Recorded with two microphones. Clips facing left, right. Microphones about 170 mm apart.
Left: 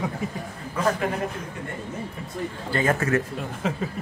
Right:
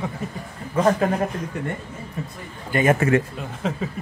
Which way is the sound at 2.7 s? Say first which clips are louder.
Right 5 dB; 15° right (ahead or behind).